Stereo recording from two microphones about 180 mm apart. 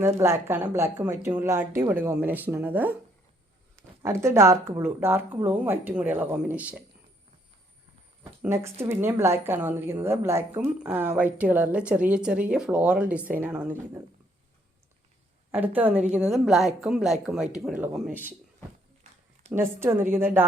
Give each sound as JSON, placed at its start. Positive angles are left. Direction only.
{"t": 0.0, "sound": "a woman's voice", "side_deg": -15}
{"t": 8.2, "sound": "a woman's voice", "side_deg": -15}
{"t": 15.5, "sound": "a woman's voice", "side_deg": -10}
{"t": 19.5, "sound": "a woman's voice", "side_deg": -10}